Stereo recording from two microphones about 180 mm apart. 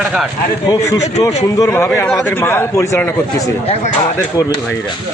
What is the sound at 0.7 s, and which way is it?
A man's voice, 15° left (ahead or behind).